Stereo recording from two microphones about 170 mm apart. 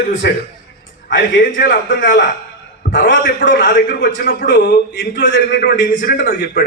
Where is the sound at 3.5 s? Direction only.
50° left (ahead or behind).